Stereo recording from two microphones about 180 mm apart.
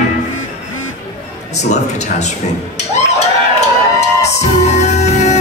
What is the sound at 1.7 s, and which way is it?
Speech, 40° left (ahead or behind).